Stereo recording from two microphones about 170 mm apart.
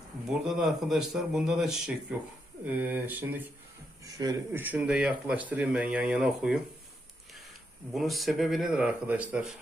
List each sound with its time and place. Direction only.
0.3 s a man's voice: centre (ahead or behind); by 4.6 s 20° right (ahead or behind)
4.6 s speech: 5° right (ahead or behind)
7.9 s a man's voice: centre (ahead or behind)